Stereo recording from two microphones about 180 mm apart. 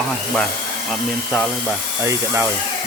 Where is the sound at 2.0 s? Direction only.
15° right (ahead or behind).